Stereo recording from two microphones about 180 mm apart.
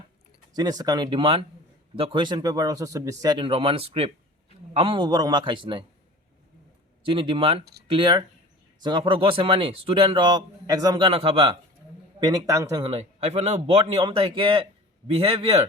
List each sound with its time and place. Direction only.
0.5 s a man's voice: 20° right (ahead or behind)
7.0 s a man's voice: 30° right (ahead or behind)
12.5 s speech: 15° right (ahead or behind)
12.8 s a man's voice: 35° right (ahead or behind)